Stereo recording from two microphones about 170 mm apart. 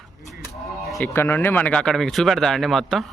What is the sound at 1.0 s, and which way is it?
Speech, 10° left (ahead or behind).